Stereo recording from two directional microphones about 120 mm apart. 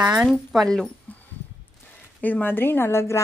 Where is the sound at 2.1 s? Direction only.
15° left (ahead or behind).